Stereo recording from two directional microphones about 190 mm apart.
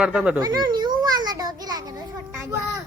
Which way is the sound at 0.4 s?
20° right (ahead or behind).